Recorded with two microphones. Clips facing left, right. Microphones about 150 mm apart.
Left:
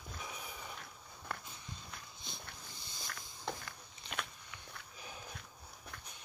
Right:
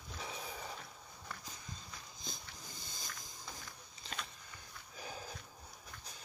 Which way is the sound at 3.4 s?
65° left (ahead or behind).